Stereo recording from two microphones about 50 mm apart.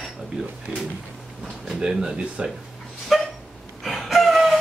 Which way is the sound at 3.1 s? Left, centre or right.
Centre.